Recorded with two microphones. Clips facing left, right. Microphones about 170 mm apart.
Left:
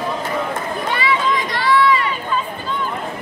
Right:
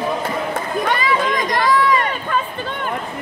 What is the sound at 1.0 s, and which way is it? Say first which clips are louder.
Chatter: even; 50° right (ahead or behind).